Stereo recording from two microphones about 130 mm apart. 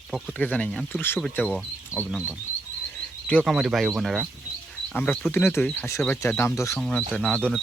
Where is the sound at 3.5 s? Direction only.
Centre (ahead or behind).